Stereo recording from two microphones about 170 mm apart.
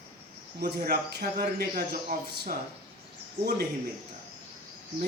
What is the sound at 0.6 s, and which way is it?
A man's voice, 60° right (ahead or behind).